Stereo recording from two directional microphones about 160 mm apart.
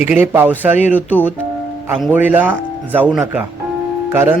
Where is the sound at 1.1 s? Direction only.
10° left (ahead or behind).